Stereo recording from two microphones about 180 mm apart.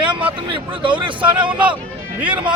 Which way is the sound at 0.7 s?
25° right (ahead or behind).